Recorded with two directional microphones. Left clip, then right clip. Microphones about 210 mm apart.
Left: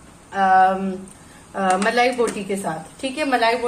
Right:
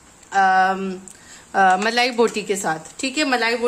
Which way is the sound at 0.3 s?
60° right (ahead or behind).